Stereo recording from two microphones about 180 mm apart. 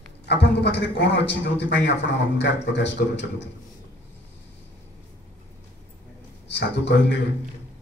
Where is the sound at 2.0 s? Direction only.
80° left.